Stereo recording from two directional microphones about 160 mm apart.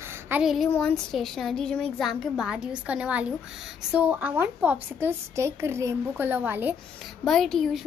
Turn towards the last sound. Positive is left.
turn(degrees=0)  # may be behind; listen again after turning